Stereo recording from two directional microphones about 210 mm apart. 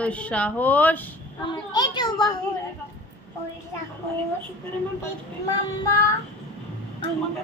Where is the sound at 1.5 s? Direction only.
20° left (ahead or behind).